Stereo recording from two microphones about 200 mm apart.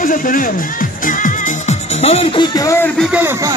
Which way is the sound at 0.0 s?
40° left (ahead or behind).